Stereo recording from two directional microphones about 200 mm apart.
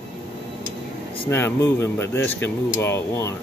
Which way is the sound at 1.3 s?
10° left (ahead or behind).